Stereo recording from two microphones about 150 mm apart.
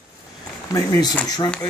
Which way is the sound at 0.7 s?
20° left (ahead or behind).